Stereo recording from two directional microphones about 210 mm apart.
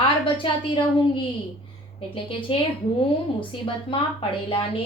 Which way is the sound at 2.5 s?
25° left (ahead or behind).